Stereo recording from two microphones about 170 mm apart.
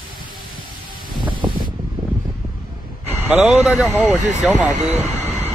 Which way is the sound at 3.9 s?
15° right (ahead or behind).